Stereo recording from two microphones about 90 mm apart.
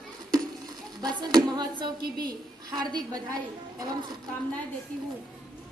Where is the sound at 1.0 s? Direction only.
50° right (ahead or behind).